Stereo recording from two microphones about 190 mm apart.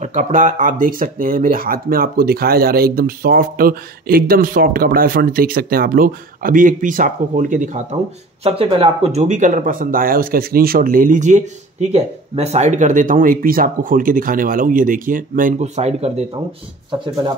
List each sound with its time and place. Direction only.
0.0 s speech: 40° right (ahead or behind)
8.5 s speech: 30° right (ahead or behind)